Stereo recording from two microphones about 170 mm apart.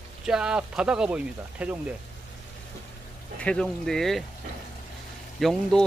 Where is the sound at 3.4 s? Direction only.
5° left (ahead or behind).